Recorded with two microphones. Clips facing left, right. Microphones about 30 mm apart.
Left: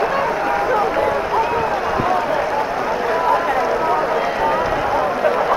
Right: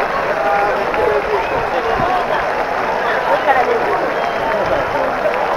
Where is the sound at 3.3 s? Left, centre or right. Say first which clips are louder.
Right 4 dB; right.